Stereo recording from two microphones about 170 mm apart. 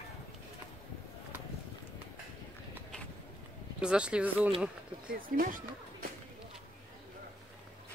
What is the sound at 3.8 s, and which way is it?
Speech, 5° right (ahead or behind).